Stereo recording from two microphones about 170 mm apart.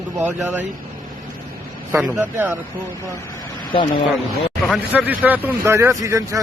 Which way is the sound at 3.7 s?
30° left (ahead or behind).